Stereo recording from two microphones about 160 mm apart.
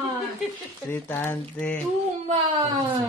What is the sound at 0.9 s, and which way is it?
Speech, 15° left (ahead or behind).